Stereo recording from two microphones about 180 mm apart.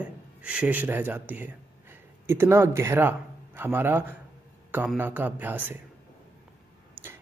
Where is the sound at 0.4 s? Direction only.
5° right (ahead or behind).